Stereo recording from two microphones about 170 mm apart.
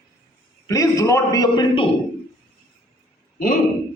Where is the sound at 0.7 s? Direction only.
20° left (ahead or behind).